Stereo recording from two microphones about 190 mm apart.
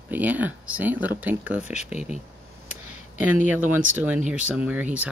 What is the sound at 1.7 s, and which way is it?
Speech, 35° left (ahead or behind).